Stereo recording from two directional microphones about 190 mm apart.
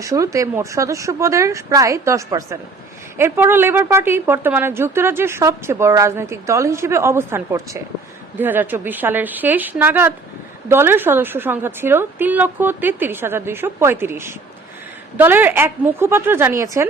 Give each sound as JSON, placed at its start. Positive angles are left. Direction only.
{"t": 0.0, "sound": "a woman's voice", "side_deg": -15}